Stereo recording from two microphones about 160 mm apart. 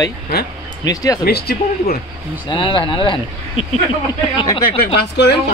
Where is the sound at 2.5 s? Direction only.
30° left (ahead or behind).